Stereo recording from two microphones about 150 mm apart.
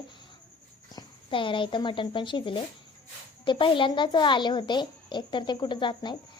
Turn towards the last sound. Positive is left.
turn(degrees=30)  # may be behind; listen again after turning